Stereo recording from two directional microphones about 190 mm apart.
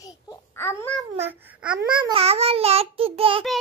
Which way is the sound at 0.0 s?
15° left (ahead or behind).